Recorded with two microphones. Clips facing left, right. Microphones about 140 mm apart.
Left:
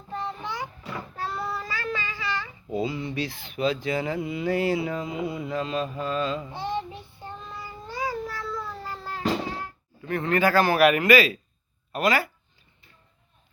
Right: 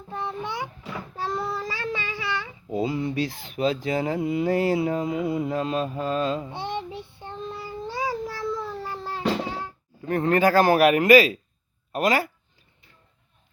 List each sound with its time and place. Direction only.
0.1 s a sound: 20° right (ahead or behind)
1.3 s child singing: 15° right (ahead or behind)
2.7 s speech: 45° right (ahead or behind)
6.4 s speech: 20° right (ahead or behind)
7.9 s a sound: 10° right (ahead or behind)
10.1 s speech: 40° right (ahead or behind)